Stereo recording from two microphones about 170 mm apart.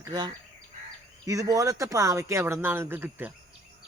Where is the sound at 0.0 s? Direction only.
20° right (ahead or behind).